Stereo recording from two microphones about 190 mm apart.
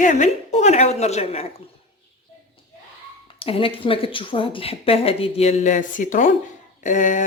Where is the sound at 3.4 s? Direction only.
30° left (ahead or behind).